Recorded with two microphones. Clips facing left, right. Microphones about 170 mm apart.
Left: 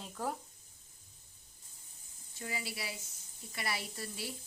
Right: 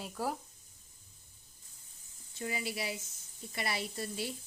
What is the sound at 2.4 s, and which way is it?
Speech, 20° right (ahead or behind).